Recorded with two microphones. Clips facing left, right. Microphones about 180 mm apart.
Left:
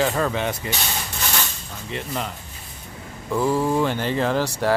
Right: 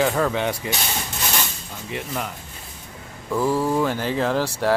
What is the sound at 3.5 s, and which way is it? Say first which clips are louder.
Speech: left 1 dB; 15° left (ahead or behind).